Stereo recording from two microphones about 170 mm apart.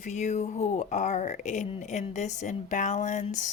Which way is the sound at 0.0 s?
45° left (ahead or behind).